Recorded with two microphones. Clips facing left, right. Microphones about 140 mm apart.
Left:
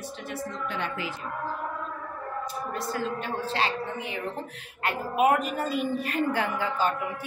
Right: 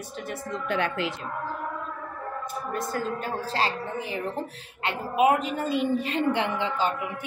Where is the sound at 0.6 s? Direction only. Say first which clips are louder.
Right 8 dB; 75° right (ahead or behind).